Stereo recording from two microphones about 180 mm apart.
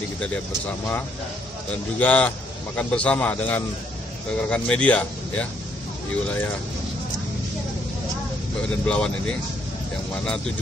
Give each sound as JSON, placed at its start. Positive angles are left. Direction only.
{"t": 2.0, "sound": "a man's voice", "side_deg": 10}
{"t": 8.8, "sound": "speech", "side_deg": 5}